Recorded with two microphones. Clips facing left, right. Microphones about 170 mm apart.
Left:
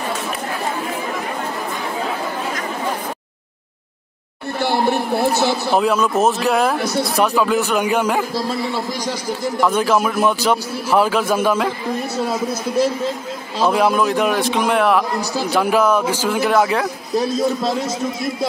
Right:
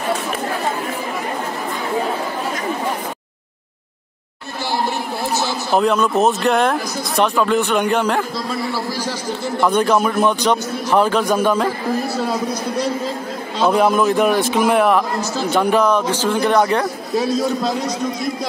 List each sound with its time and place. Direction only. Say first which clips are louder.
4.6 s a man's voice: left 4 dB; 60° left (ahead or behind)
5.7 s speech: right 4 dB; centre (ahead or behind)
6.8 s speech: left 6 dB; 65° left (ahead or behind)
7.2 s speech: right 2 dB; 5° left (ahead or behind)
8.4 s a man's voice: left 1 dB; 30° left (ahead or behind)
8.9 s speech: even; 15° left (ahead or behind)
9.7 s speech: right 2 dB; 5° left (ahead or behind)
13.6 s speech: right 1 dB; 5° left (ahead or behind)
15.1 s speech: right 1 dB; 15° left (ahead or behind)